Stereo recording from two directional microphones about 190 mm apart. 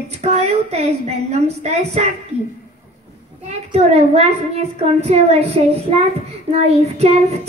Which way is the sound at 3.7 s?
35° right (ahead or behind).